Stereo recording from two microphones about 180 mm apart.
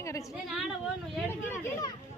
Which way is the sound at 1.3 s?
15° left (ahead or behind).